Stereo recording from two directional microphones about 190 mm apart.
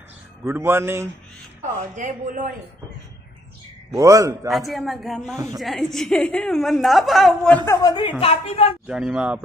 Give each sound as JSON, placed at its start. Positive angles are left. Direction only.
{"t": 0.4, "sound": "a man's voice", "side_deg": -10}
{"t": 1.8, "sound": "speech", "side_deg": -40}
{"t": 3.9, "sound": "a man's voice", "side_deg": -15}
{"t": 4.5, "sound": "a woman's voice", "side_deg": 0}
{"t": 8.2, "sound": "a woman's voice", "side_deg": 35}
{"t": 8.8, "sound": "a woman's voice", "side_deg": -5}